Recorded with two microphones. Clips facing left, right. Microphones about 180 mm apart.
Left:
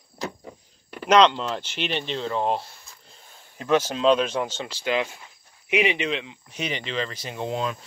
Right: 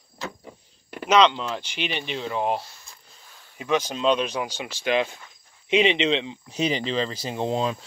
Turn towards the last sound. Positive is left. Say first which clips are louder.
# right 3 dB
turn(degrees=-30)  # may be behind; listen again after turning